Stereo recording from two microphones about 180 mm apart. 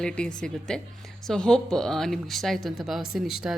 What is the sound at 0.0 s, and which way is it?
Speech, 5° left (ahead or behind).